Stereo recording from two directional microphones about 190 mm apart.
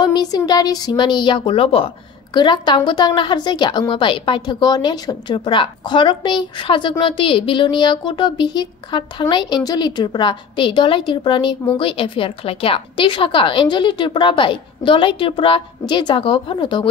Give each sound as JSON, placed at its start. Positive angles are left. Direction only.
{"t": 0.0, "sound": "a woman's voice", "side_deg": 20}